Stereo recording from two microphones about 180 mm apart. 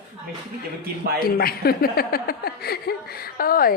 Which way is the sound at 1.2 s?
55° left (ahead or behind).